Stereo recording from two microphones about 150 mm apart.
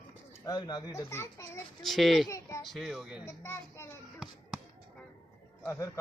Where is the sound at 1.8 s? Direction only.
Centre (ahead or behind).